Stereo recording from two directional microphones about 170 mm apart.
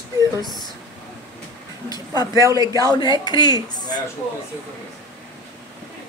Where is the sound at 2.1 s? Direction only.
20° left (ahead or behind).